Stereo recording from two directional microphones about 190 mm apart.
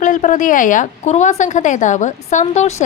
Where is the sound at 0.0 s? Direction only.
40° left (ahead or behind).